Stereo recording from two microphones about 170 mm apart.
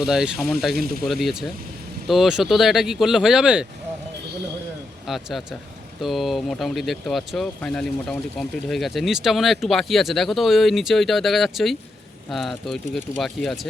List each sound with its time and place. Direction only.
0.0 s speech: 5° right (ahead or behind)
0.7 s speech: 65° right (ahead or behind)
1.0 s speech: centre (ahead or behind)
5.0 s speech: centre (ahead or behind)